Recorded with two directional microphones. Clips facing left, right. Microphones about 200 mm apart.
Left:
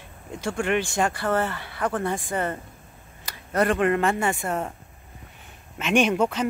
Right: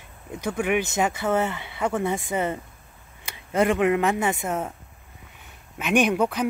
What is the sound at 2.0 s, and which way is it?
Speech, 25° right (ahead or behind).